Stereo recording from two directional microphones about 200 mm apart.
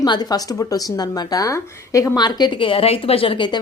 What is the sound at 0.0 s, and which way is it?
A woman's voice, 20° left (ahead or behind).